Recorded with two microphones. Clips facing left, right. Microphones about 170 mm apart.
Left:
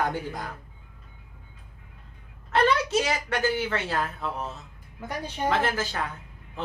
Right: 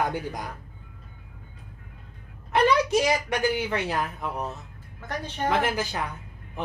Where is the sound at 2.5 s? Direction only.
15° right (ahead or behind).